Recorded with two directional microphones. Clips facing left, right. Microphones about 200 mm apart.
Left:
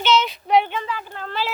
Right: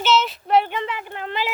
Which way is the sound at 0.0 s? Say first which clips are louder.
Even; 5° right (ahead or behind).